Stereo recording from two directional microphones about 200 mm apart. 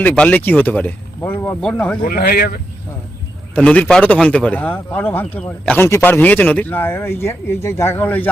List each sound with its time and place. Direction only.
0.0 s speech: 5° left (ahead or behind)
2.0 s speech: 50° left (ahead or behind)
3.5 s speech: 5° left (ahead or behind)